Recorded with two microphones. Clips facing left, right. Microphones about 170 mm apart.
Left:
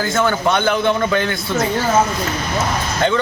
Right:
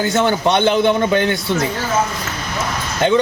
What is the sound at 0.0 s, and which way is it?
A man's voice, 20° right (ahead or behind).